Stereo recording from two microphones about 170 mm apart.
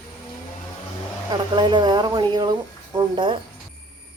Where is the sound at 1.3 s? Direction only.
25° right (ahead or behind).